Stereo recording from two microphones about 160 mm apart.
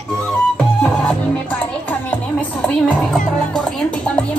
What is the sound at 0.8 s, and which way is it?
Music, 5° left (ahead or behind).